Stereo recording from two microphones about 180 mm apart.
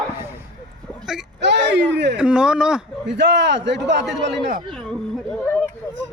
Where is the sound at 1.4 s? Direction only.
75° right (ahead or behind).